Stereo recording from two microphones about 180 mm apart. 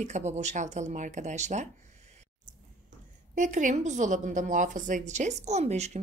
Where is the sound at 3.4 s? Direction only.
45° right (ahead or behind).